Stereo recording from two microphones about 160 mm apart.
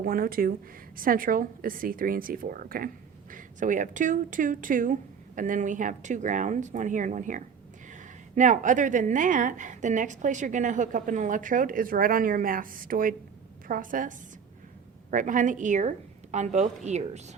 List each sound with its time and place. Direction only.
0.0 s a woman's voice: 65° right (ahead or behind)
3.3 s a woman's voice: 55° right (ahead or behind)
15.1 s a woman's voice: 55° right (ahead or behind)